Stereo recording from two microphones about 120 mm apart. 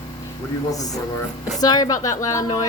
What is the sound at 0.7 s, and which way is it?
Speech, 30° left (ahead or behind).